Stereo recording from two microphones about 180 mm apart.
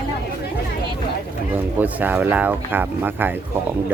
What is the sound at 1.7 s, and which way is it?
Speech, 10° right (ahead or behind).